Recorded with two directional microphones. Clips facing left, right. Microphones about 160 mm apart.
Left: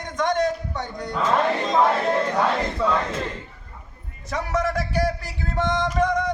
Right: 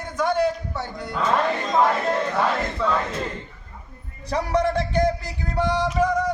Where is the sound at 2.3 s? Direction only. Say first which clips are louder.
Left 1 dB; 15° left (ahead or behind).